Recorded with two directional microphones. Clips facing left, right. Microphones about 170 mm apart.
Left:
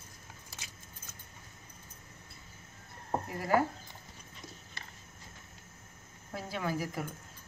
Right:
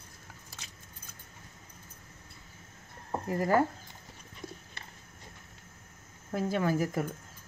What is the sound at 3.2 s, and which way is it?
Speech, 45° right (ahead or behind).